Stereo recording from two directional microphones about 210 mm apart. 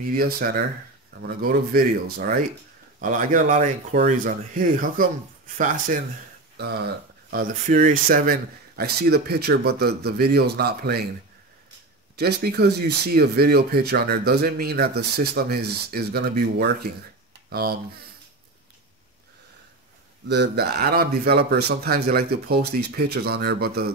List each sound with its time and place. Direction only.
0.1 s speech: 45° right (ahead or behind)
6.5 s speech: 50° right (ahead or behind)
12.2 s speech: 50° right (ahead or behind)
20.2 s speech: 55° right (ahead or behind)